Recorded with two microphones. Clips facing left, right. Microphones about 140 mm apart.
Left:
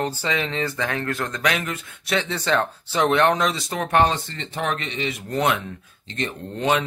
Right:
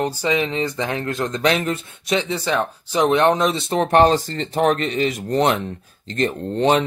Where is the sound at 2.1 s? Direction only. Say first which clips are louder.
Right 2 dB; 10° right (ahead or behind); by 6.9 s 35° right (ahead or behind).